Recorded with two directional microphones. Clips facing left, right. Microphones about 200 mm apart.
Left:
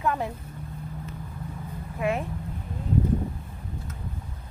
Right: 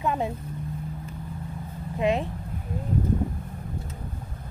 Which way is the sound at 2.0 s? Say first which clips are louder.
Right 3 dB; 20° right (ahead or behind).